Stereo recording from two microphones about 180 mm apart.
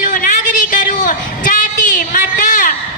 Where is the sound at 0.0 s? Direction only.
50° left (ahead or behind).